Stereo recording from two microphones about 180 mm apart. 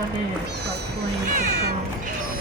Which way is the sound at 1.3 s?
40° right (ahead or behind).